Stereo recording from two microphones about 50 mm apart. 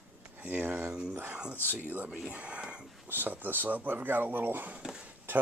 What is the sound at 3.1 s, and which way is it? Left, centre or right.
Speech, right.